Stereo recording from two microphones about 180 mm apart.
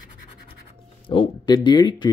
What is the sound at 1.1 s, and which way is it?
Speech, 25° left (ahead or behind).